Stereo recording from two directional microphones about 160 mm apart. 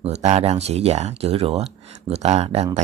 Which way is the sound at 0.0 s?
40° right (ahead or behind).